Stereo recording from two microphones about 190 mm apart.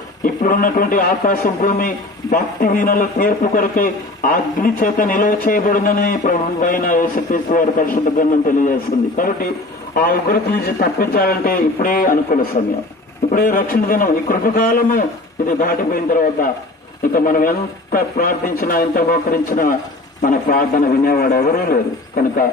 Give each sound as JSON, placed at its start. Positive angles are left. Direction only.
{"t": 0.2, "sound": "a man's voice", "side_deg": 45}